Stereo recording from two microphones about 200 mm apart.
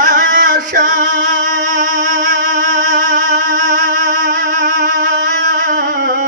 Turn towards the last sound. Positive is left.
turn(degrees=-45)  # may be behind; listen again after turning